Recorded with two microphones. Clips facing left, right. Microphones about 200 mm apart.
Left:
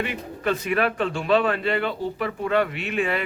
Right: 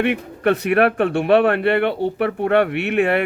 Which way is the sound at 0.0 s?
65° right (ahead or behind).